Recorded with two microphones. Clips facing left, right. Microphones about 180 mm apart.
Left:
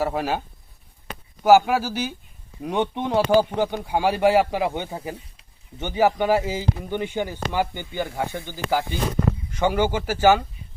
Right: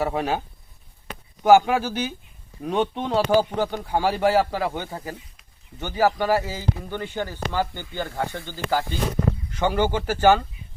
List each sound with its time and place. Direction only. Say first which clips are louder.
0.0 s speech: even; centre (ahead or behind)
1.5 s speech: even; 5° left (ahead or behind)